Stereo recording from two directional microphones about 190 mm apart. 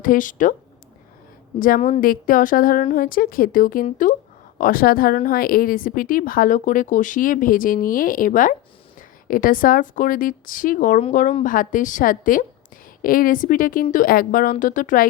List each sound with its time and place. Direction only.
0.0 s speech: 45° left (ahead or behind)
1.5 s a woman's voice: 50° left (ahead or behind)